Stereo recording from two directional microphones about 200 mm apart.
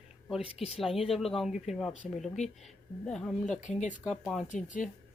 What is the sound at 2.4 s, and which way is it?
Speech, 35° left (ahead or behind).